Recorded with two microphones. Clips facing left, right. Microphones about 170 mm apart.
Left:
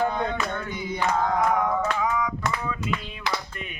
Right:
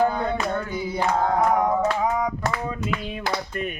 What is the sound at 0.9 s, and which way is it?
Mantra, 35° right (ahead or behind).